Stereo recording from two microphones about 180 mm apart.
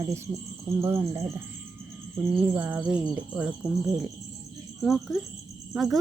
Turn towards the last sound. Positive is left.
turn(degrees=0)  # may be behind; listen again after turning